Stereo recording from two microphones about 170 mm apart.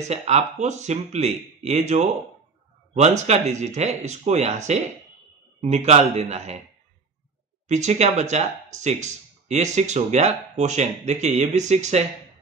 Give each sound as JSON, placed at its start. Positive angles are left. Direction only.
{"t": 0.1, "sound": "speech", "side_deg": -40}
{"t": 7.6, "sound": "speech", "side_deg": -45}